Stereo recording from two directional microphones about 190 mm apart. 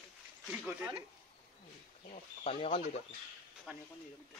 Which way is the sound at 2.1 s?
30° left (ahead or behind).